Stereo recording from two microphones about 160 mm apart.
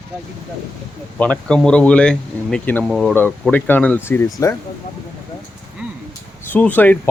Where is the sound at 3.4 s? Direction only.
10° left (ahead or behind).